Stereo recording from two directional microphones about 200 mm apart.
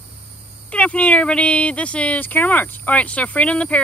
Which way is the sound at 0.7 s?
5° left (ahead or behind).